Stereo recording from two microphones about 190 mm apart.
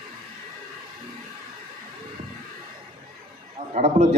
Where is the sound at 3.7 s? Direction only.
35° right (ahead or behind).